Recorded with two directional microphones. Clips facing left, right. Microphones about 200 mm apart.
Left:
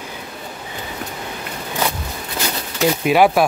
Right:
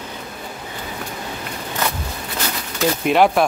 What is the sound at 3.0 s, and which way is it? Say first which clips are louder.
Speech: left 1 dB; 5° left (ahead or behind).